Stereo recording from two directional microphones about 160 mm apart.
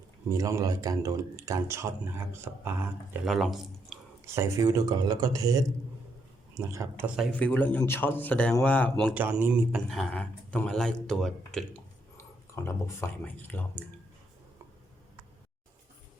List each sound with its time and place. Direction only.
0.3 s speech: 20° right (ahead or behind)
3.2 s speech: centre (ahead or behind)
4.4 s speech: 20° right (ahead or behind)
7.3 s a man's voice: 10° left (ahead or behind)
9.1 s speech: 10° right (ahead or behind)
9.9 s speech: 5° left (ahead or behind)
12.1 s speech: 15° left (ahead or behind)